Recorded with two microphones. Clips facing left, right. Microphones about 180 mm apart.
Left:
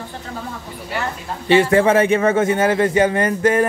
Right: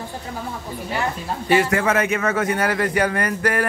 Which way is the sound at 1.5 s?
30° left (ahead or behind).